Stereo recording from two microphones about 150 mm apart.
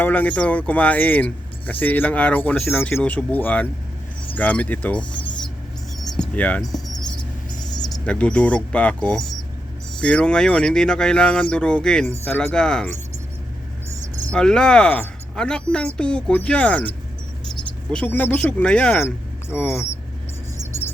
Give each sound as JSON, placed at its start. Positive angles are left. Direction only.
{"t": 0.0, "sound": "speech", "side_deg": 10}
{"t": 6.1, "sound": "a sound", "side_deg": 5}
{"t": 6.7, "sound": "mouse", "side_deg": 25}
{"t": 8.0, "sound": "speech", "side_deg": 10}
{"t": 14.3, "sound": "speech", "side_deg": 5}
{"t": 17.9, "sound": "speech", "side_deg": 10}
{"t": 19.0, "sound": "speech", "side_deg": 15}